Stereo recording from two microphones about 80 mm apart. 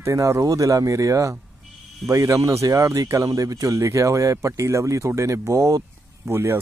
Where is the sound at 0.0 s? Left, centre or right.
Right.